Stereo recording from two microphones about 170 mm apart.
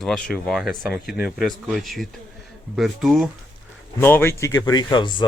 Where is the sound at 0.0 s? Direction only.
5° left (ahead or behind).